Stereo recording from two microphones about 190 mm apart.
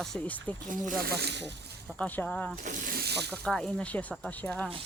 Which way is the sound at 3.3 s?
5° left (ahead or behind).